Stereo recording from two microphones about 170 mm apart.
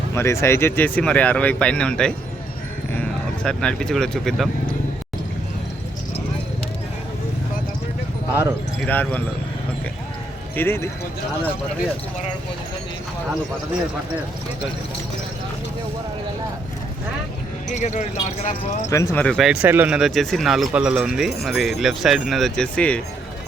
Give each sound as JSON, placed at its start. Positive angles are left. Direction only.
{"t": 0.1, "sound": "speech", "side_deg": 15}
{"t": 8.9, "sound": "speech", "side_deg": 10}
{"t": 10.5, "sound": "speech", "side_deg": 15}
{"t": 17.7, "sound": "speech", "side_deg": 45}
{"t": 18.9, "sound": "speech", "side_deg": 15}
{"t": 19.2, "sound": "speech", "side_deg": 0}
{"t": 19.6, "sound": "speech", "side_deg": -10}